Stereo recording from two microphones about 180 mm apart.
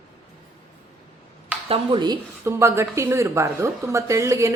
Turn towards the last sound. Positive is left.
turn(degrees=-15)  # may be behind; listen again after turning